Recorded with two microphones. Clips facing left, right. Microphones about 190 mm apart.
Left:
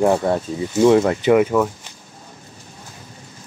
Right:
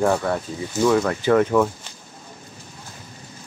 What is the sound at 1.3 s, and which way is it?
Speech, 5° left (ahead or behind).